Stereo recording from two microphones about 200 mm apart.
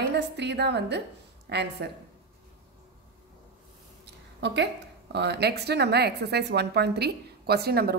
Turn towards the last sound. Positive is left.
turn(degrees=-50)  # may be behind; listen again after turning